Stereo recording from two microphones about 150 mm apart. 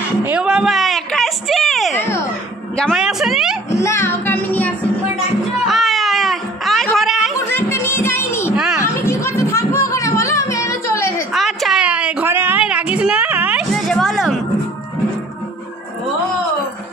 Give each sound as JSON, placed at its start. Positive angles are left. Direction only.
{"t": 0.2, "sound": "a woman's voice", "side_deg": -10}
{"t": 2.0, "sound": "a child's voice", "side_deg": 15}
{"t": 2.8, "sound": "a woman's voice", "side_deg": 0}
{"t": 3.7, "sound": "music", "side_deg": 20}
{"t": 5.7, "sound": "a sound", "side_deg": 0}
{"t": 7.4, "sound": "music", "side_deg": 15}
{"t": 11.3, "sound": "a sound", "side_deg": 0}
{"t": 13.8, "sound": "music", "side_deg": 0}